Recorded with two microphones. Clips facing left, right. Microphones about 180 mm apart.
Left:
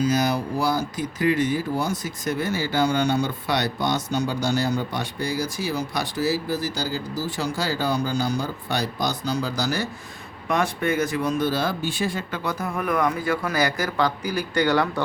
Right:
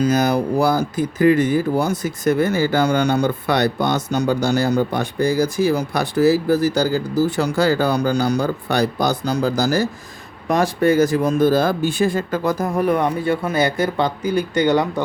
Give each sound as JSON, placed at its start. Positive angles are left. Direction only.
{"t": 0.0, "sound": "speech", "side_deg": -55}